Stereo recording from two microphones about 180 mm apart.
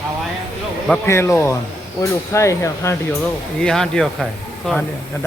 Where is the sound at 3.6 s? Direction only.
5° left (ahead or behind).